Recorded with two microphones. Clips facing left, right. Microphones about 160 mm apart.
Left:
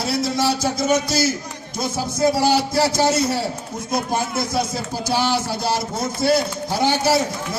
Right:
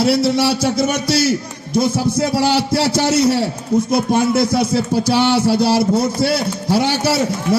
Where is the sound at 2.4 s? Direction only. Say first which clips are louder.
Right 2 dB; 75° right (ahead or behind).